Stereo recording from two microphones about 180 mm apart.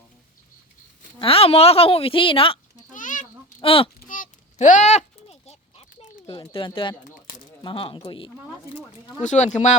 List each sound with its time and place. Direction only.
1.2 s a woman's voice: 30° left (ahead or behind)
2.9 s a sound: 45° left (ahead or behind)
3.6 s a woman's voice: 30° left (ahead or behind)
4.1 s a sound: 45° left (ahead or behind)
6.2 s speech: 30° left (ahead or behind)
9.2 s a woman's voice: 40° left (ahead or behind)